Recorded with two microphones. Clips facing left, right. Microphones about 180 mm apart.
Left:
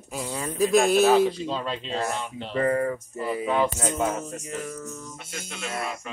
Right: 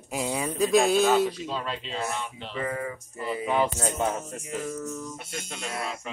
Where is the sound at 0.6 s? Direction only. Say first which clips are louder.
Left 2 dB; centre (ahead or behind).